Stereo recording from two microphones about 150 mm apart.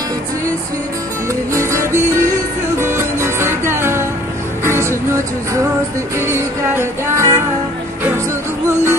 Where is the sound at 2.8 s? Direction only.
15° right (ahead or behind).